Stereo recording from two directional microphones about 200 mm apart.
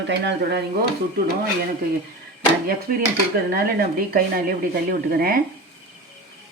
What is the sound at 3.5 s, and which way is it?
A woman's voice, 50° right (ahead or behind).